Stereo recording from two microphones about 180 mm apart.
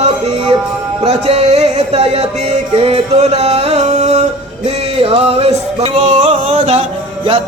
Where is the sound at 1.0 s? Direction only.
35° right (ahead or behind).